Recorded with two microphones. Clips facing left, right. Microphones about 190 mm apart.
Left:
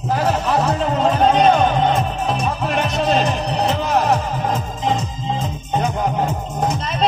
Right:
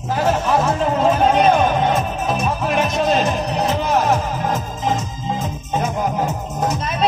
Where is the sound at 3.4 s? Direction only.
30° left (ahead or behind).